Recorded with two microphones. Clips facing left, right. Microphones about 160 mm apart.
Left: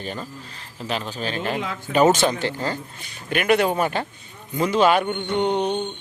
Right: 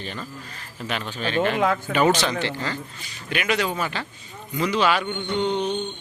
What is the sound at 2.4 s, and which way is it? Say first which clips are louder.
Speech: left 2 dB; 45° left (ahead or behind).